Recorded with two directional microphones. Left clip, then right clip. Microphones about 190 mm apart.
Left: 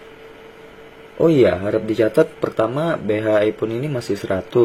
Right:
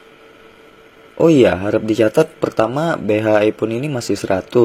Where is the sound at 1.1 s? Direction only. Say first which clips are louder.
Right 3 dB; 30° right (ahead or behind).